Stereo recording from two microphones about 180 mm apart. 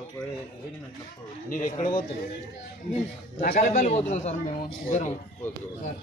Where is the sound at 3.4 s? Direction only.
45° left (ahead or behind).